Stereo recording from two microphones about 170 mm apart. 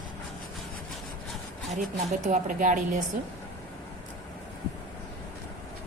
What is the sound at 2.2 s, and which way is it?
Speech, 50° right (ahead or behind).